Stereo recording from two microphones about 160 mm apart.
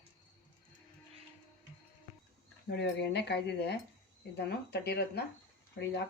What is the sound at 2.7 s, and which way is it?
Speech, 90° left.